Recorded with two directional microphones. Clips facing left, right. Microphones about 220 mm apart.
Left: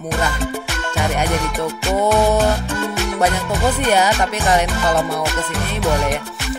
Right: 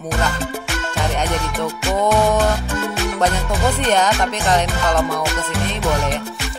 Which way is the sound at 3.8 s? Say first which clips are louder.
Left 1 dB; 10° left (ahead or behind).